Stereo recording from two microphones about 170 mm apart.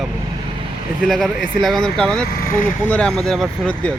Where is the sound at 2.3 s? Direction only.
60° left (ahead or behind).